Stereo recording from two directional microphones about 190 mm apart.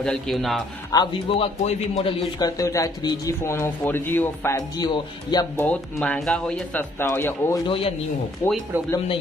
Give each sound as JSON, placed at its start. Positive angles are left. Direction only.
{"t": 0.0, "sound": "a man's voice", "side_deg": 0}
{"t": 0.9, "sound": "a man's voice", "side_deg": 30}
{"t": 5.6, "sound": "speech", "side_deg": 10}
{"t": 7.6, "sound": "a man's voice", "side_deg": 30}
{"t": 8.4, "sound": "speech", "side_deg": 15}